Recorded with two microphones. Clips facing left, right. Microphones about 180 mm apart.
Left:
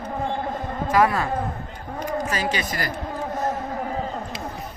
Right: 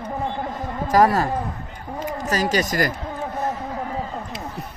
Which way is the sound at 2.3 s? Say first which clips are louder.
Right 4 dB; 40° right (ahead or behind).